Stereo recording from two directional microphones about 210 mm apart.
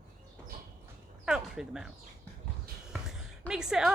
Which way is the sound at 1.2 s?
5° right (ahead or behind).